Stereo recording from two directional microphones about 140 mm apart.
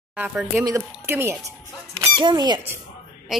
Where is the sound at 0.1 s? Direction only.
10° right (ahead or behind).